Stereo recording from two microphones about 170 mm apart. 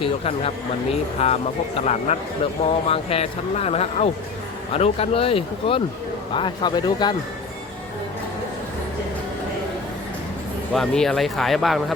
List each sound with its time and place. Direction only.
0.0 s speech: 35° left (ahead or behind)
10.8 s speech: 5° left (ahead or behind)